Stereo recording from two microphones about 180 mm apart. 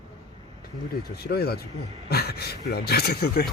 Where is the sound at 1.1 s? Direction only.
60° left (ahead or behind).